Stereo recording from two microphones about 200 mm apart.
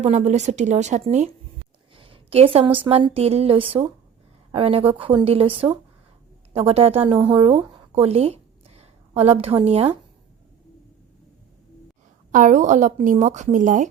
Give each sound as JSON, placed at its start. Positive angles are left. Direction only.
{"t": 0.0, "sound": "a woman's voice", "side_deg": -35}
{"t": 12.3, "sound": "a woman's voice", "side_deg": -40}